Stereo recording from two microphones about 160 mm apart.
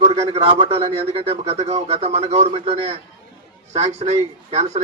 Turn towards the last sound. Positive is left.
turn(degrees=-40)  # may be behind; listen again after turning